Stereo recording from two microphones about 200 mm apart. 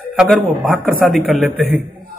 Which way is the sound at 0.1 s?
Centre (ahead or behind).